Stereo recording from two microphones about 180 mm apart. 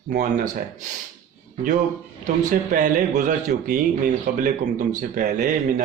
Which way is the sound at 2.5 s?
45° right (ahead or behind).